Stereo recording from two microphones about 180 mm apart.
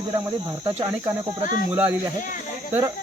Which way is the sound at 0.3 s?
20° right (ahead or behind).